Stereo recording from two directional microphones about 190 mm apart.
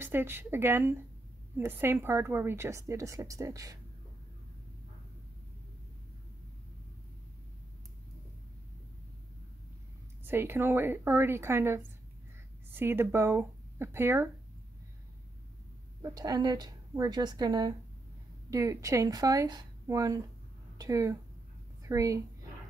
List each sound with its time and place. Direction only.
0.0 s a woman's voice: 10° right (ahead or behind)
10.2 s a woman's voice: 10° right (ahead or behind)
16.0 s a woman's voice: 20° right (ahead or behind)